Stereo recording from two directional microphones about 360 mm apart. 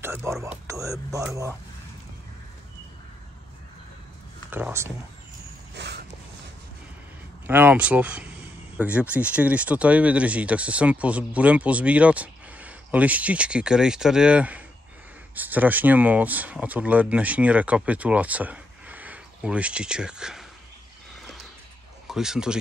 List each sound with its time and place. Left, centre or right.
0.0 s speech: centre
4.5 s speech: centre
5.8 s a sound: right
7.4 s speech: centre
21.2 s a sound: centre
22.0 s speech: centre